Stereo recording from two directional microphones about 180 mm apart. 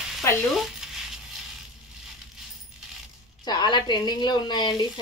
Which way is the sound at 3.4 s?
20° left (ahead or behind).